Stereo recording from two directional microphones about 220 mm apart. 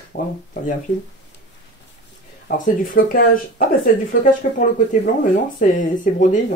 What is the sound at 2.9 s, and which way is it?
Speech, 40° left (ahead or behind).